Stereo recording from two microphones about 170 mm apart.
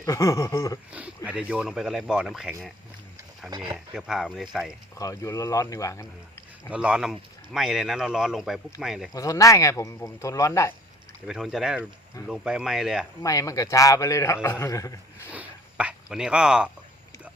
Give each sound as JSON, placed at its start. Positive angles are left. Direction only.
{"t": 0.0, "sound": "speech", "side_deg": 15}
{"t": 0.9, "sound": "speech", "side_deg": -10}
{"t": 3.5, "sound": "speech", "side_deg": -25}
{"t": 3.9, "sound": "speech", "side_deg": 0}
{"t": 4.9, "sound": "a man's voice", "side_deg": 20}
{"t": 6.7, "sound": "speech", "side_deg": -5}
{"t": 9.1, "sound": "speech", "side_deg": 20}
{"t": 11.3, "sound": "speech", "side_deg": 0}
{"t": 13.2, "sound": "a man's voice", "side_deg": 20}
{"t": 15.3, "sound": "speech", "side_deg": -10}